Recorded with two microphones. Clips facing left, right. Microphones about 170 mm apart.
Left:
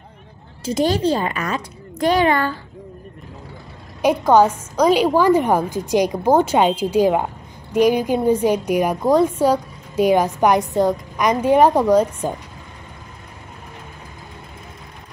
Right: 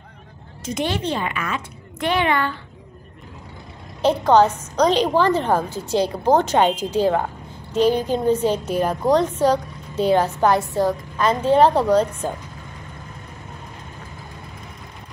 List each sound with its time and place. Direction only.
0.7 s speech: 35° left (ahead or behind)
4.0 s a woman's voice: 10° left (ahead or behind)